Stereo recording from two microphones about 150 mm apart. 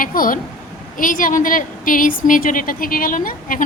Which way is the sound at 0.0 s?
65° left (ahead or behind).